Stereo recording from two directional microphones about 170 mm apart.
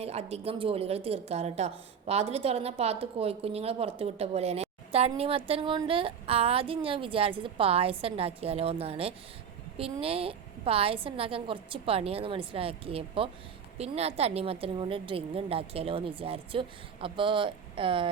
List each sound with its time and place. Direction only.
0.0 s a woman's voice: 35° right (ahead or behind)